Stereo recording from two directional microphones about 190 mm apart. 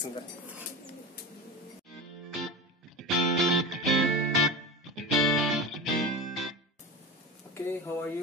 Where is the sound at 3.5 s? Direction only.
Centre (ahead or behind).